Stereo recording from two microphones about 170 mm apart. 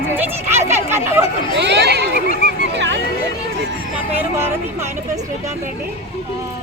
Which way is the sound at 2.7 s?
90° right.